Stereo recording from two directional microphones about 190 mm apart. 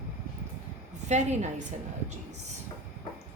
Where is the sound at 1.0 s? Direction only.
40° right (ahead or behind).